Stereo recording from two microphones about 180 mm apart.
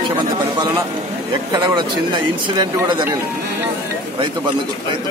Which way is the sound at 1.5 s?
25° right (ahead or behind).